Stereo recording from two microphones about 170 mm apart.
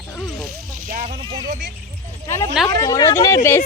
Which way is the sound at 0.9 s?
50° right (ahead or behind).